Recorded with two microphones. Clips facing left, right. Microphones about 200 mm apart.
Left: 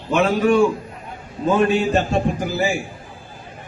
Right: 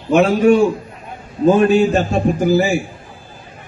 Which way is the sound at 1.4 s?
45° right (ahead or behind).